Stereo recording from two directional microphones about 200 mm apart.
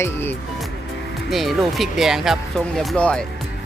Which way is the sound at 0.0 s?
10° left (ahead or behind).